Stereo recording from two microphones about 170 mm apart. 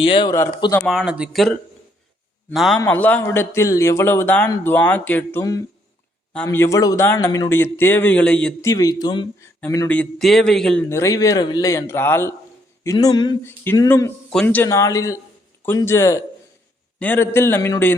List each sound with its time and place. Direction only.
0.0 s speech: 30° left (ahead or behind)
0.9 s speech: 5° right (ahead or behind)
2.8 s speech: 10° left (ahead or behind)
8.6 s speech: 20° left (ahead or behind); by 10.8 s 5° left (ahead or behind)
10.8 s speech: 15° left (ahead or behind)